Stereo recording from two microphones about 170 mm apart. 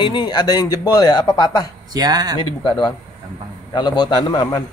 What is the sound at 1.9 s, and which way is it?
Speech, 25° right (ahead or behind).